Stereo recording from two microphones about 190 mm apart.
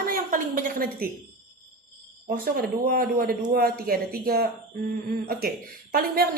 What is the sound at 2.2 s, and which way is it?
A woman's voice, 50° right (ahead or behind).